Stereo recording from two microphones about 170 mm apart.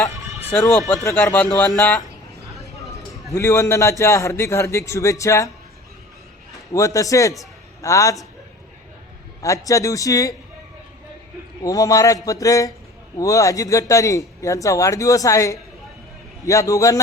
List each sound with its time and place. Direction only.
0.1 s a sound: 20° right (ahead or behind)
1.0 s a man's voice: 15° left (ahead or behind)
3.3 s a man's voice: 15° left (ahead or behind)
6.5 s a man's voice: 20° left (ahead or behind)
9.4 s a man's voice: 20° left (ahead or behind)
11.6 s a man's voice: 20° left (ahead or behind)